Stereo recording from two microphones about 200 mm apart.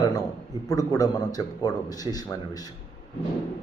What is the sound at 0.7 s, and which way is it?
A man's voice, 15° left (ahead or behind).